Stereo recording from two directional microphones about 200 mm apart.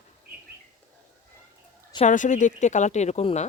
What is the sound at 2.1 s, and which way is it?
Speech, 40° left (ahead or behind).